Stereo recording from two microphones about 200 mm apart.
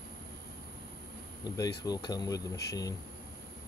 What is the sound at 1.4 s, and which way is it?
Speech, 20° left (ahead or behind).